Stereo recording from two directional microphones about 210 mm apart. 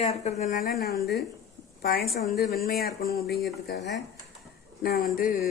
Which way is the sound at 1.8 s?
50° left (ahead or behind).